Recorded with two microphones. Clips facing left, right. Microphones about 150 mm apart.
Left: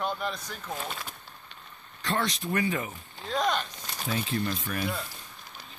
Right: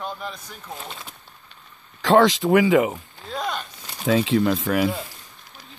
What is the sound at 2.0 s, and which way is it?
Speech, 90° right.